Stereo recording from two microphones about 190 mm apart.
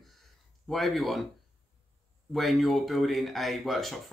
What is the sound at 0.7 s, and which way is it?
Speech, centre (ahead or behind).